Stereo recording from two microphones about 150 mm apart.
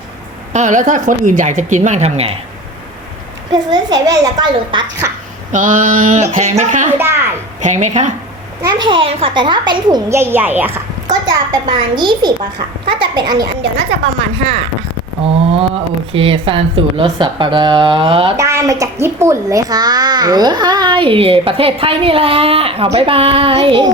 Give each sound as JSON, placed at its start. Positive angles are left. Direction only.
{"t": 0.5, "sound": "a woman's voice", "side_deg": -55}
{"t": 3.5, "sound": "a child's voice", "side_deg": -25}
{"t": 5.5, "sound": "a sound", "side_deg": -55}
{"t": 6.3, "sound": "a woman's voice", "side_deg": -50}
{"t": 8.6, "sound": "a child's voice", "side_deg": -35}
{"t": 10.1, "sound": "speech", "side_deg": -15}
{"t": 11.1, "sound": "a child's voice", "side_deg": -25}
{"t": 15.2, "sound": "a child's voice", "side_deg": -40}
{"t": 18.3, "sound": "a child's voice", "side_deg": -20}